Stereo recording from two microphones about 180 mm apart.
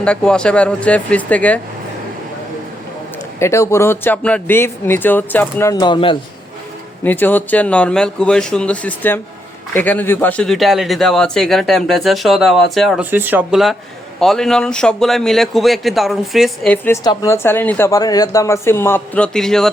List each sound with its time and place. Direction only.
0.0 s speech: 5° left (ahead or behind)
3.4 s speech: 15° left (ahead or behind)
5.8 s speech: 25° left (ahead or behind)
7.0 s speech: 10° left (ahead or behind)
13.1 s speech: 10° right (ahead or behind)
16.7 s speech: 10° left (ahead or behind)